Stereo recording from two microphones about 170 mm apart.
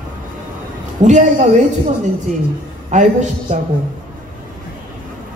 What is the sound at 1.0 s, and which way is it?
Speech, 45° right (ahead or behind).